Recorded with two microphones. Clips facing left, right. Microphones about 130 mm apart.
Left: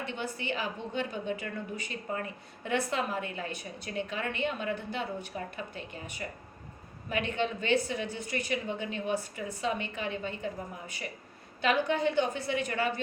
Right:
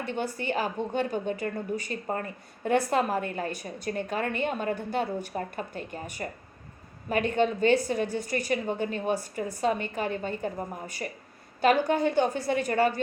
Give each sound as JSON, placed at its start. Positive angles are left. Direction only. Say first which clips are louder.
{"t": 0.0, "sound": "a woman's voice", "louder": "right 5 dB", "side_deg": -45}